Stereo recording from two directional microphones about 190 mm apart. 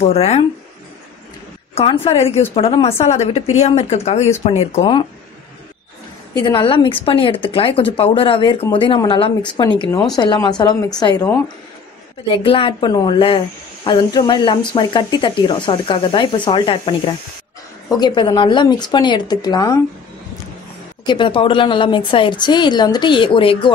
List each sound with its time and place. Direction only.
0.0 s speech: 35° left (ahead or behind)
1.8 s speech: 30° left (ahead or behind)
6.3 s speech: 25° left (ahead or behind)
21.0 s speech: 25° left (ahead or behind)